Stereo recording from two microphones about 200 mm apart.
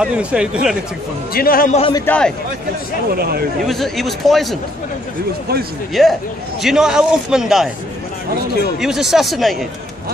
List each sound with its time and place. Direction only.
0.0 s a man's voice: 5° right (ahead or behind)
1.3 s a man's voice: 45° left (ahead or behind)
1.8 s a man's voice: 25° left (ahead or behind)
2.0 s a man's voice: 5° left (ahead or behind)
3.2 s speech: 50° right (ahead or behind)
3.6 s a man's voice: centre (ahead or behind)
6.0 s a man's voice: centre (ahead or behind)
8.7 s a man's voice: centre (ahead or behind)